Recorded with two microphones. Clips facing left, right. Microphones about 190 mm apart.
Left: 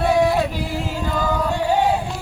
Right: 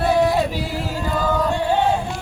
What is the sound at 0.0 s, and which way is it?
Singing, centre (ahead or behind).